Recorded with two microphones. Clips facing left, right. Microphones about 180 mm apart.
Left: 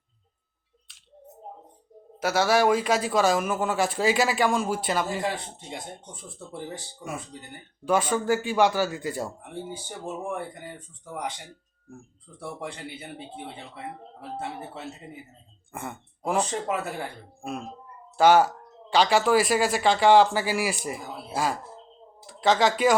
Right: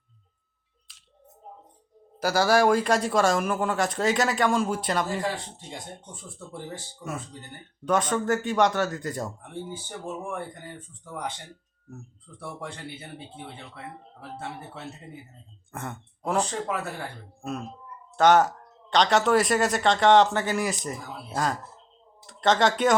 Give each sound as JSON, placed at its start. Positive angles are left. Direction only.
{"t": 2.2, "sound": "a man's voice", "side_deg": 0}
{"t": 7.9, "sound": "speech", "side_deg": 5}
{"t": 10.3, "sound": "speech", "side_deg": 10}
{"t": 12.5, "sound": "speech", "side_deg": 15}
{"t": 15.7, "sound": "speech", "side_deg": 10}
{"t": 16.5, "sound": "speech", "side_deg": 20}
{"t": 18.2, "sound": "a man's voice", "side_deg": 5}